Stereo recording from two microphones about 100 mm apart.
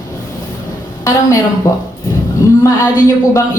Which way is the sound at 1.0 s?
30° left (ahead or behind).